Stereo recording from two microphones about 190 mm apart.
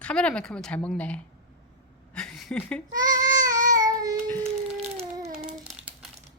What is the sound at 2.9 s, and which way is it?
Child singing, 20° right (ahead or behind).